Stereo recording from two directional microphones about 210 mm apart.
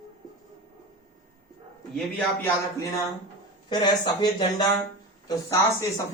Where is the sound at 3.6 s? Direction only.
20° left (ahead or behind).